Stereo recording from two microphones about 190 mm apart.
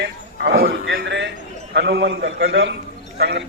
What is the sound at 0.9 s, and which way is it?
A man's voice, 65° right (ahead or behind).